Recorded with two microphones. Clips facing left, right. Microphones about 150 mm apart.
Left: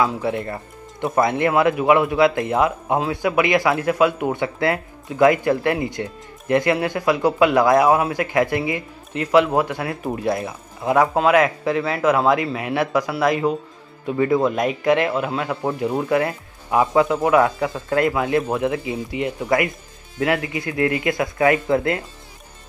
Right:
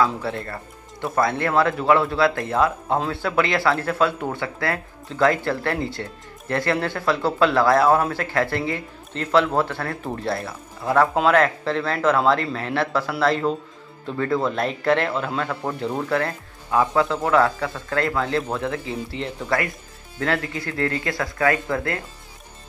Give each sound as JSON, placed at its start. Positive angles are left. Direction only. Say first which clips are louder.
{"t": 0.0, "sound": "a man's voice", "louder": "left 2 dB", "side_deg": 15}